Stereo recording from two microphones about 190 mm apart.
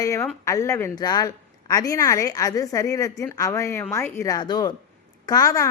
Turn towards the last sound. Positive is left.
turn(degrees=15)  # may be behind; listen again after turning